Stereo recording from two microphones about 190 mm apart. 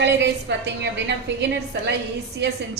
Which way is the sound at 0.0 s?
65° right (ahead or behind).